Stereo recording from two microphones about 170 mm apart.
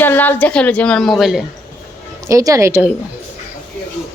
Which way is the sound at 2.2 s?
20° right (ahead or behind).